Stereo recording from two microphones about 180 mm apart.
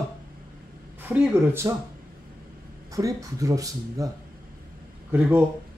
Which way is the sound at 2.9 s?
20° right (ahead or behind).